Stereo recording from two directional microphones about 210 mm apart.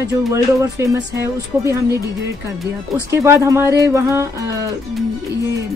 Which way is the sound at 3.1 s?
15° right (ahead or behind).